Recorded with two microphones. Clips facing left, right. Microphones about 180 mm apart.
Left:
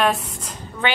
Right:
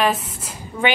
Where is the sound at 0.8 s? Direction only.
15° right (ahead or behind).